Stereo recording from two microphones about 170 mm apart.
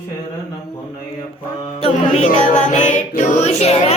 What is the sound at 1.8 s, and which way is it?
Music, 40° left (ahead or behind).